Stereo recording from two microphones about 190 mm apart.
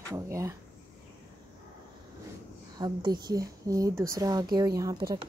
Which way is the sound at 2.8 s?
20° right (ahead or behind).